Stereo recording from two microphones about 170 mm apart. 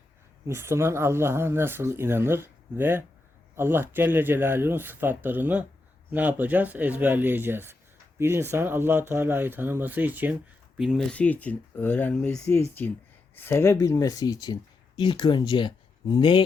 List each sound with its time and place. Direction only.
0.4 s speech: 15° right (ahead or behind); by 16.4 s 25° left (ahead or behind)